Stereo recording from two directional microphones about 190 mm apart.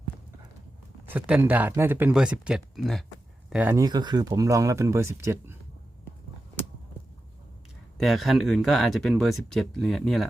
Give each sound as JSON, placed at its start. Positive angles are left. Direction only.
{"t": 1.0, "sound": "speech", "side_deg": -10}
{"t": 7.9, "sound": "speech", "side_deg": 0}